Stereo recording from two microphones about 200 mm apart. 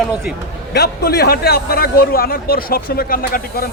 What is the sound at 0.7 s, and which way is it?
A man's voice, 55° left (ahead or behind).